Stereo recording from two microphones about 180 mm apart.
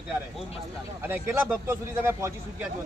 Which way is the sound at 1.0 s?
10° right (ahead or behind).